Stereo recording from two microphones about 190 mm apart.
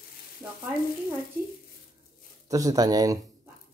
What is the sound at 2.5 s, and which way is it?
Speech, 20° right (ahead or behind).